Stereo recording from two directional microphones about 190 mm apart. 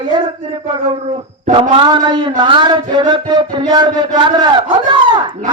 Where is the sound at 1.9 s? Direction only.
20° right (ahead or behind).